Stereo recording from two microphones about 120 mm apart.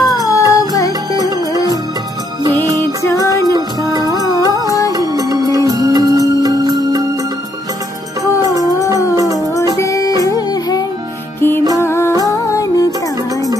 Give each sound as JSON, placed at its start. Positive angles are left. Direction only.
{"t": 0.0, "sound": "music", "side_deg": 30}
{"t": 3.0, "sound": "music", "side_deg": 25}
{"t": 3.4, "sound": "music", "side_deg": -35}
{"t": 9.8, "sound": "music", "side_deg": 30}
{"t": 11.8, "sound": "music", "side_deg": 20}